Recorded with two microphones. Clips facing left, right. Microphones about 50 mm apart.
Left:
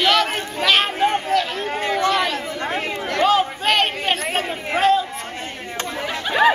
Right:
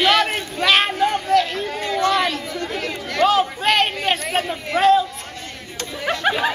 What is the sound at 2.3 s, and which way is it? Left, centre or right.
Chatter, left.